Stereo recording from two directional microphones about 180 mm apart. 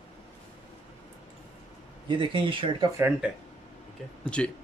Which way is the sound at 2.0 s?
25° right (ahead or behind).